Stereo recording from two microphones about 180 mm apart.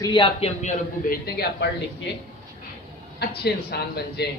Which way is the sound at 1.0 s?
60° left (ahead or behind).